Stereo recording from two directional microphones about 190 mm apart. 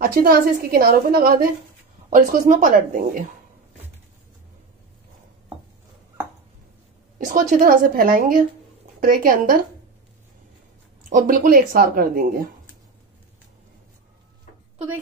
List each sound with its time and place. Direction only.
0.0 s a woman's voice: 50° right (ahead or behind)
7.2 s a woman's voice: 45° right (ahead or behind)
11.1 s a woman's voice: 45° right (ahead or behind)